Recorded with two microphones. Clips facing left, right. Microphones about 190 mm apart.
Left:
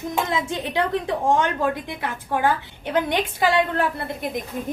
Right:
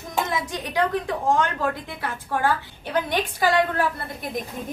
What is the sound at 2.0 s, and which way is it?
A woman's voice, 20° left (ahead or behind).